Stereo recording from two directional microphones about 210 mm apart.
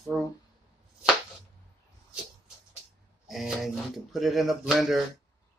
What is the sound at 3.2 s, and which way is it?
Speech, centre (ahead or behind).